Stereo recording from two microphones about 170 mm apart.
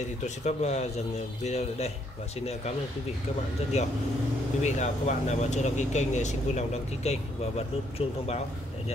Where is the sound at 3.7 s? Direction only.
40° left (ahead or behind).